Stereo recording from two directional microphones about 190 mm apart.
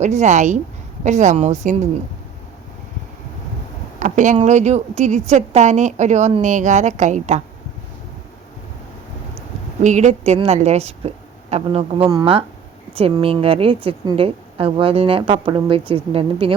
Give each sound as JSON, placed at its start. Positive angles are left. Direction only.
{"t": 0.0, "sound": "speech", "side_deg": -35}
{"t": 4.0, "sound": "speech", "side_deg": -40}
{"t": 9.8, "sound": "speech", "side_deg": -40}
{"t": 12.0, "sound": "a woman's voice", "side_deg": -20}
{"t": 12.9, "sound": "a woman's voice", "side_deg": -30}